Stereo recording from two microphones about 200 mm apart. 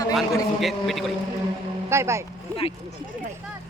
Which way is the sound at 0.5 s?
Centre (ahead or behind).